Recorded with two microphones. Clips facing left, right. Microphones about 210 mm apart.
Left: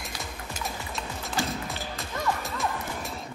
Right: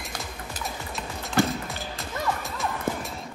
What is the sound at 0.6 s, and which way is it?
Music, centre (ahead or behind).